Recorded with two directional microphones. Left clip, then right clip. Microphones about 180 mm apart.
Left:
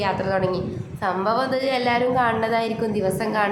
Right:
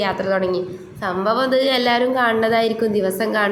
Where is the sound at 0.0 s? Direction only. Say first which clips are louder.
Right 3 dB; 15° right (ahead or behind).